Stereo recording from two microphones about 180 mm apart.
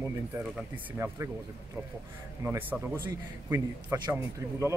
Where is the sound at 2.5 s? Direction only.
10° right (ahead or behind).